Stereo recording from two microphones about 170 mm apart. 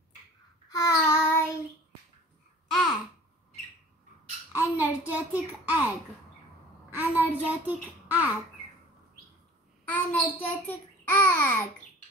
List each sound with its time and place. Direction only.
0.7 s child singing: 20° left (ahead or behind)
2.7 s babbling: centre (ahead or behind)
4.5 s a sound: 10° right (ahead or behind)
7.0 s a sound: 10° right (ahead or behind)
7.4 s a child's voice: 10° right (ahead or behind)
9.8 s a child's voice: 10° left (ahead or behind)